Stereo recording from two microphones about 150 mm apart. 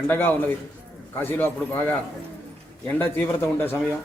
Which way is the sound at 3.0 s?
15° left (ahead or behind).